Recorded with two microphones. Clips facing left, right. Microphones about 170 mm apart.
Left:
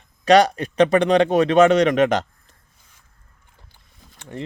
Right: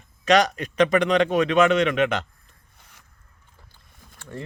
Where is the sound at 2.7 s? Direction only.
70° right (ahead or behind).